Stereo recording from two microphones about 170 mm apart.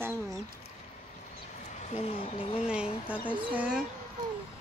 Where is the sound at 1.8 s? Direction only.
40° left (ahead or behind).